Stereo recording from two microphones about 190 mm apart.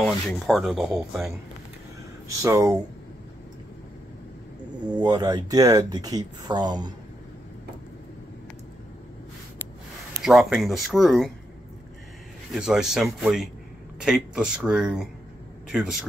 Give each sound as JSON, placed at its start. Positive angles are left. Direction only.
{"t": 0.0, "sound": "speech", "side_deg": 0}
{"t": 2.4, "sound": "speech", "side_deg": -15}
{"t": 4.8, "sound": "speech", "side_deg": -20}
{"t": 10.2, "sound": "speech", "side_deg": 0}
{"t": 12.5, "sound": "speech", "side_deg": -5}